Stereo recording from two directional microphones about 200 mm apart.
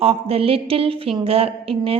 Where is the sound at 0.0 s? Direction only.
30° right (ahead or behind).